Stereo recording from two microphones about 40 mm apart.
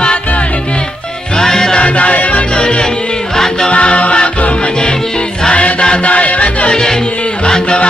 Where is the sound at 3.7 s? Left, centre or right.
Left.